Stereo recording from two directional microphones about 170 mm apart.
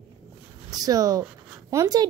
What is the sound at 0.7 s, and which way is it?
A woman's voice, 20° right (ahead or behind).